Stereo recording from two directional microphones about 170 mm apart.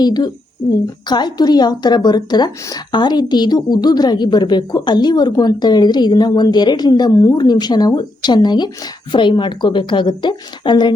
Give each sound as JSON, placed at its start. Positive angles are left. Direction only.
{"t": 0.0, "sound": "speech", "side_deg": 25}